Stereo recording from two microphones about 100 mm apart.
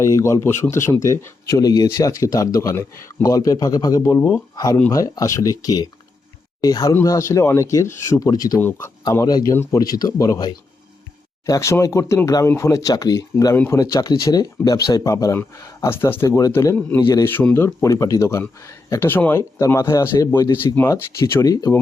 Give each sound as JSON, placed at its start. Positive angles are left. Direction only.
{"t": 0.0, "sound": "speech", "side_deg": 30}
{"t": 8.5, "sound": "speech", "side_deg": 20}
{"t": 9.2, "sound": "speech", "side_deg": 35}